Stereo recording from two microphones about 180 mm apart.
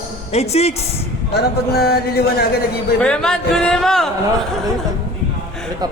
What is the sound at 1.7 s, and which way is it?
Speech, 60° left (ahead or behind).